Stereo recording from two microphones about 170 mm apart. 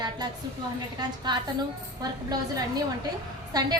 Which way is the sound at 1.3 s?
25° right (ahead or behind).